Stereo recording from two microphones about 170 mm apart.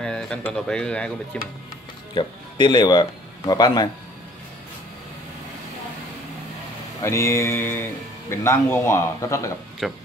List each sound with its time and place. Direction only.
0.0 s speech: 5° left (ahead or behind)
2.1 s a man's voice: 25° left (ahead or behind)
7.0 s a man's voice: 15° left (ahead or behind)
9.8 s speech: centre (ahead or behind)